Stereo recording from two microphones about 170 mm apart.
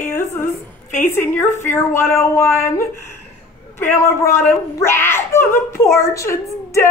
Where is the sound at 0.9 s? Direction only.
10° left (ahead or behind).